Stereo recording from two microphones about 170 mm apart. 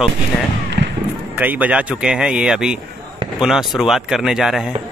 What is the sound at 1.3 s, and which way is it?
A man's voice, 10° right (ahead or behind).